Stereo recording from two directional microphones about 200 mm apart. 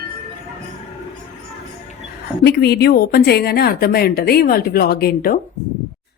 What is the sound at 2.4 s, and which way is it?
A woman's voice, 55° left (ahead or behind).